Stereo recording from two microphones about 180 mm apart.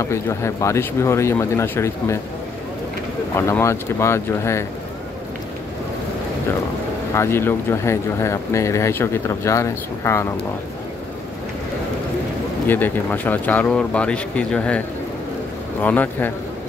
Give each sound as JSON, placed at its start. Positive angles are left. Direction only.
{"t": 0.0, "sound": "speech", "side_deg": 15}
{"t": 3.3, "sound": "speech", "side_deg": 15}
{"t": 7.2, "sound": "speech", "side_deg": 15}
{"t": 12.6, "sound": "speech", "side_deg": 10}
{"t": 15.8, "sound": "speech", "side_deg": 10}